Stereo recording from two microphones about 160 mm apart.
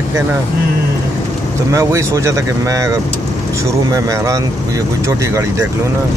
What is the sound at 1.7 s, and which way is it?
Speech, 20° right (ahead or behind).